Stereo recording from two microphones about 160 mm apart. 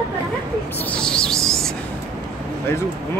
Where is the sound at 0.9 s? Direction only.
5° left (ahead or behind).